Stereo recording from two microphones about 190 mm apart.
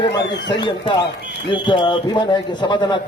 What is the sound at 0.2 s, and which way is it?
Speech, 65° left (ahead or behind).